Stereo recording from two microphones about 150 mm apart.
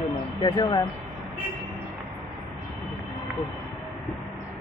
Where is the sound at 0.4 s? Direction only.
30° left (ahead or behind).